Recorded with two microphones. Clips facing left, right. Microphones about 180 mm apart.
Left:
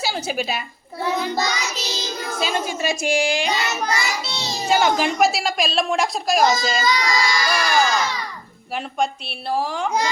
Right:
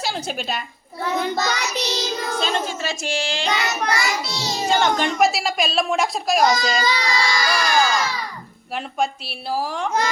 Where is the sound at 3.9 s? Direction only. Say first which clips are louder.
Right 1 dB; 25° left (ahead or behind).